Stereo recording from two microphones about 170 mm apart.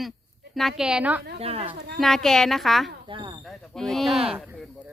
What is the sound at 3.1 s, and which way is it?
Speech, 30° right (ahead or behind).